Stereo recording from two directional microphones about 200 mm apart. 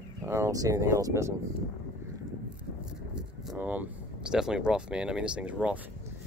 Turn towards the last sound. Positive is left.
turn(degrees=-5)  # may be behind; listen again after turning